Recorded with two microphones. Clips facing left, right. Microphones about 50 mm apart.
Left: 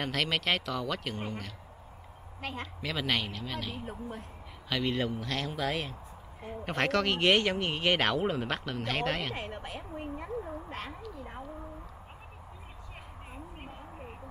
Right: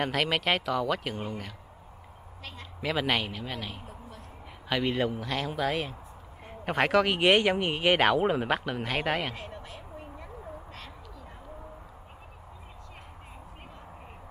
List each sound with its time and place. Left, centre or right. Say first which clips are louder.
0.0 s speech: right 3 dB; centre
2.4 s a woman's voice: left 7 dB; left
2.8 s speech: right 4 dB; centre
9.3 s speech: left 3 dB; left
9.8 s a sound: left 5 dB; left